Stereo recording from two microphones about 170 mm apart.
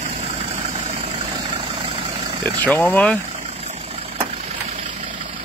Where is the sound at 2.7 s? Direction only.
10° left (ahead or behind).